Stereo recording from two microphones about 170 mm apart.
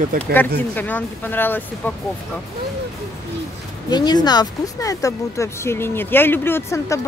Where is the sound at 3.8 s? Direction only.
25° left (ahead or behind).